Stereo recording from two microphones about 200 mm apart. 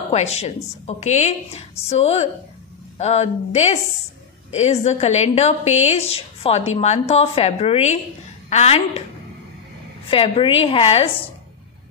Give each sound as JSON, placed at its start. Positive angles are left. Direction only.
{"t": 0.1, "sound": "a woman's voice", "side_deg": 30}
{"t": 10.0, "sound": "a woman's voice", "side_deg": 25}